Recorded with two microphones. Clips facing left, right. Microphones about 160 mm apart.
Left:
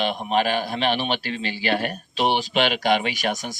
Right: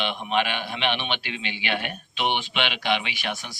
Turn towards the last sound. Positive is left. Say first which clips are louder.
# left 7 dB
turn(degrees=40)  # may be behind; listen again after turning